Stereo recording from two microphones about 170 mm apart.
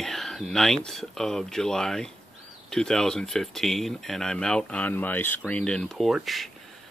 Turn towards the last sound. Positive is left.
turn(degrees=0)  # may be behind; listen again after turning